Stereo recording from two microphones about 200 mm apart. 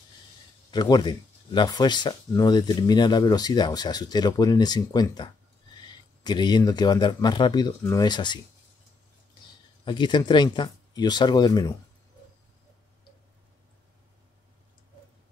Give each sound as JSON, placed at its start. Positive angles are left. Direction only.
{"t": 0.7, "sound": "speech", "side_deg": 20}
{"t": 9.8, "sound": "speech", "side_deg": 20}